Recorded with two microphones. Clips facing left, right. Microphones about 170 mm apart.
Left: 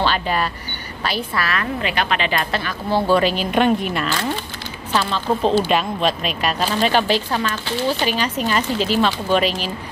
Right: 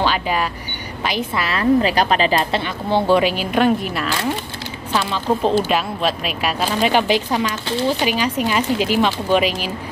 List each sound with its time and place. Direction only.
0.0 s a woman's voice: 10° right (ahead or behind)
3.2 s speech: 10° right (ahead or behind)
5.1 s speech: 5° right (ahead or behind)